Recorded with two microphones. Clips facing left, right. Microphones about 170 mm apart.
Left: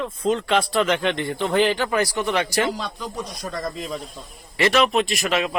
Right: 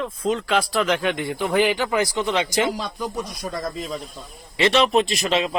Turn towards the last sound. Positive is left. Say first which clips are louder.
# right 1 dB
turn(degrees=-30)  # may be behind; listen again after turning